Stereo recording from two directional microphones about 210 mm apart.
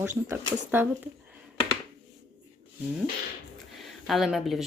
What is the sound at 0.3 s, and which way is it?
Speech, 10° right (ahead or behind).